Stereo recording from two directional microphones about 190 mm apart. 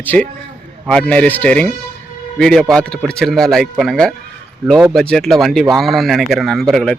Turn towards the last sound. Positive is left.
turn(degrees=0)  # may be behind; listen again after turning